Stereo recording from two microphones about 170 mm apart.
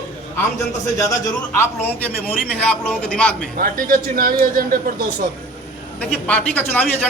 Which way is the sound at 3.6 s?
55° right (ahead or behind).